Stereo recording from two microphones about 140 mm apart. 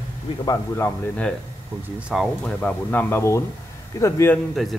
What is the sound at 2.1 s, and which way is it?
Speech, centre (ahead or behind).